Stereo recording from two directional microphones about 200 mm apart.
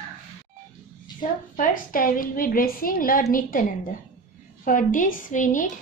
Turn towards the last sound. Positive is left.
turn(degrees=40)  # may be behind; listen again after turning